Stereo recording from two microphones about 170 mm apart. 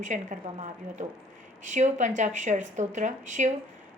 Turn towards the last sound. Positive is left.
turn(degrees=-45)  # may be behind; listen again after turning